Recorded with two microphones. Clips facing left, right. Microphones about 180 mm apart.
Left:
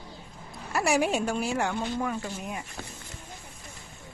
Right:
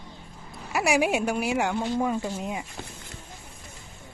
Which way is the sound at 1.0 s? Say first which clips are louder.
Right 2 dB; 15° right (ahead or behind).